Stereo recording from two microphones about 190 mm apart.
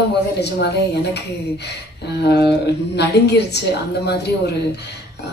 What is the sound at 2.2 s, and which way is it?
Speech, 60° left (ahead or behind).